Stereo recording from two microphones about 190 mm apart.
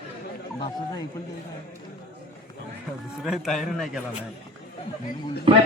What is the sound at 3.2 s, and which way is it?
A man's voice, centre (ahead or behind).